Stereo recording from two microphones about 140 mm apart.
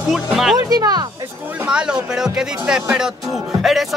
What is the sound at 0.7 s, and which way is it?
Speech, 30° right (ahead or behind).